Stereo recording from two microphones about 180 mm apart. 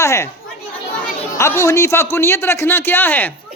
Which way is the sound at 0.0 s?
15° left (ahead or behind).